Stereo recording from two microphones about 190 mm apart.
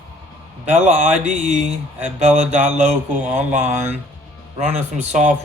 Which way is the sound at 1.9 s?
10° right (ahead or behind).